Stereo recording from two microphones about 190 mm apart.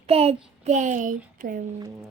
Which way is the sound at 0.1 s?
30° right (ahead or behind).